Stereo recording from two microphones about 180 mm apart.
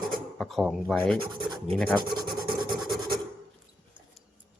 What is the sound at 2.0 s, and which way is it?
Writing, 25° right (ahead or behind).